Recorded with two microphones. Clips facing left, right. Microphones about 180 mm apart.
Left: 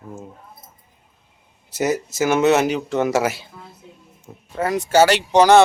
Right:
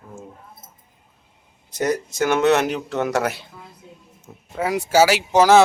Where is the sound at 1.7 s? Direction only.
5° left (ahead or behind).